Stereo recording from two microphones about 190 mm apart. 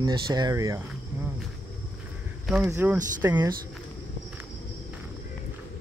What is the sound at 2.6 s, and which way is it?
Speech, 10° right (ahead or behind).